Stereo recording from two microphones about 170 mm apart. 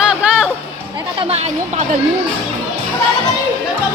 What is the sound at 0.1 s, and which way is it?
Music, 5° right (ahead or behind).